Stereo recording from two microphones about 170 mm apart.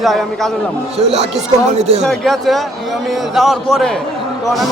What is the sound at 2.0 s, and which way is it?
A man's voice, centre (ahead or behind).